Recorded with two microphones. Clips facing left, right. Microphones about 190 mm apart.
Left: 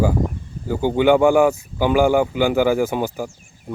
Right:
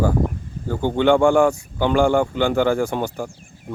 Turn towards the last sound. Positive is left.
turn(degrees=5)  # may be behind; listen again after turning